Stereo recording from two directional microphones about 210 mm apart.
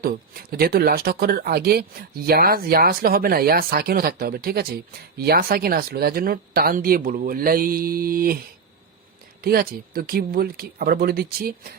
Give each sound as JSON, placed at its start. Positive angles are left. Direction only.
{"t": 0.6, "sound": "speech", "side_deg": -45}
{"t": 9.4, "sound": "speech", "side_deg": -45}